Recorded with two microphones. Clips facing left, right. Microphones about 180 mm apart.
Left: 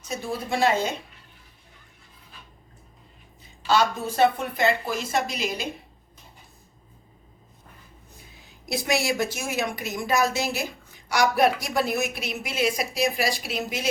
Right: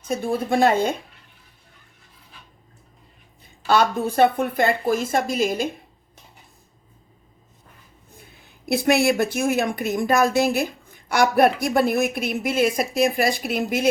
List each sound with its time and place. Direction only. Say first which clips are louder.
0.1 s a woman's voice: right 7 dB; 55° right (ahead or behind)
3.7 s a woman's voice: right 3 dB; 55° right (ahead or behind)
8.1 s a woman's voice: right 5 dB; 55° right (ahead or behind)